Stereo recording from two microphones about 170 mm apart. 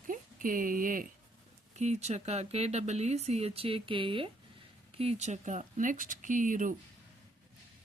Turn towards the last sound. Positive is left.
turn(degrees=-50)  # may be behind; listen again after turning